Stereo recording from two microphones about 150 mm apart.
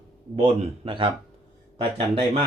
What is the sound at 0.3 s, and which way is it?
Speech, 40° right (ahead or behind).